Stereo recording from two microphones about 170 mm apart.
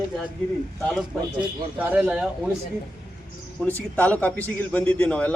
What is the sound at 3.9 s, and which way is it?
A man's voice, 10° left (ahead or behind).